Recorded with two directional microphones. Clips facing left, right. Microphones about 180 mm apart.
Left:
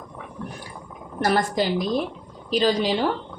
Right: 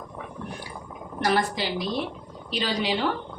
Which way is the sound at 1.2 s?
45° left (ahead or behind).